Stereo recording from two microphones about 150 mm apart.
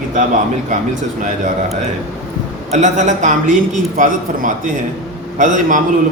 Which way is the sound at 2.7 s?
55° right (ahead or behind).